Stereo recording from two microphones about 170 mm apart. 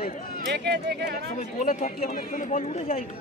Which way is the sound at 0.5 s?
80° right.